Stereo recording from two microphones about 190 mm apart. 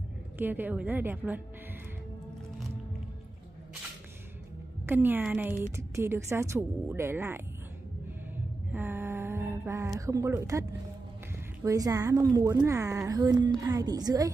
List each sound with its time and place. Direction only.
0.4 s a woman's voice: 10° right (ahead or behind)
4.8 s a woman's voice: 10° right (ahead or behind)
8.7 s a sound: 10° right (ahead or behind)
9.9 s a woman's voice: 15° right (ahead or behind)
11.6 s a woman's voice: 20° right (ahead or behind)